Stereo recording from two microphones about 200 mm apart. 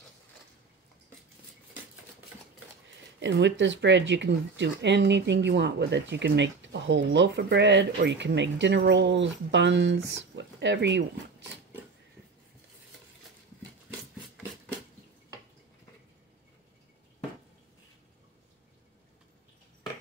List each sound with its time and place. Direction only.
3.0 s speech: 60° right (ahead or behind)